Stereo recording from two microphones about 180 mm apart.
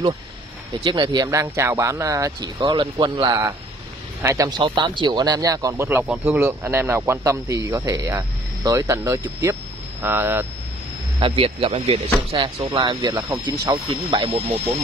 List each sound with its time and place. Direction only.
0.8 s speech: 25° right (ahead or behind)
11.1 s speech: 30° right (ahead or behind)